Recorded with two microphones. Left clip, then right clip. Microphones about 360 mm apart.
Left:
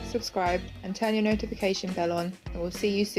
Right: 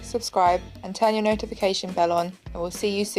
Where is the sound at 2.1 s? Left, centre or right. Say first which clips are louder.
Right 7 dB; right.